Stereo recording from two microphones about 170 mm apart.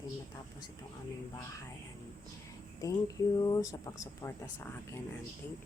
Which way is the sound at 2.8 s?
20° left (ahead or behind).